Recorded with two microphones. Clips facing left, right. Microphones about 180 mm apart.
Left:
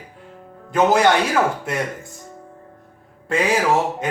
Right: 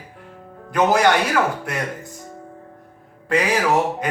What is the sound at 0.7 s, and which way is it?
Speech, 25° left (ahead or behind).